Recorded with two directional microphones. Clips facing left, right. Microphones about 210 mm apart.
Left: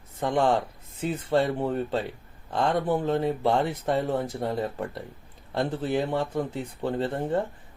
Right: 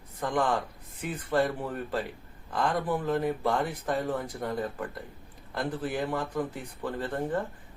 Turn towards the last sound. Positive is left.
turn(degrees=25)  # may be behind; listen again after turning